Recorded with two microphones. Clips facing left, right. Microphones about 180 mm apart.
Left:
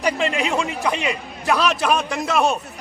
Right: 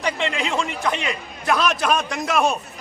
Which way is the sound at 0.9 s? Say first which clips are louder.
Left 2 dB; centre (ahead or behind).